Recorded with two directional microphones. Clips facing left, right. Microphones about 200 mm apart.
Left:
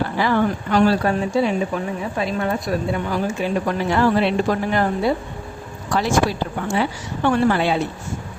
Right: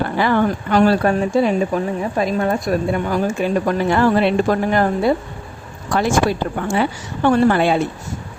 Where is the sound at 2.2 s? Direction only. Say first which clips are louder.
Right 4 dB; 40° right (ahead or behind).